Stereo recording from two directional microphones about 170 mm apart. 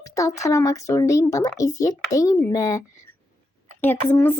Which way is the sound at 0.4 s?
20° left (ahead or behind).